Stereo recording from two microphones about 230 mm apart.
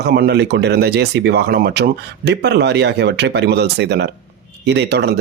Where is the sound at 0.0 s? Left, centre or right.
Right.